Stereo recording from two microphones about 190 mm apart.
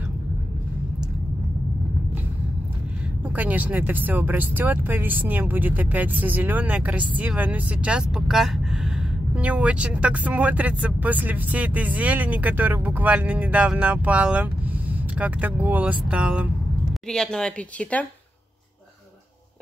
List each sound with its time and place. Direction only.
3.3 s speech: 10° right (ahead or behind); by 18.0 s 5° left (ahead or behind)